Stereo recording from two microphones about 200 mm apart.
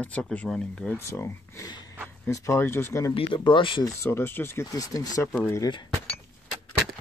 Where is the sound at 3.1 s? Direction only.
25° left (ahead or behind).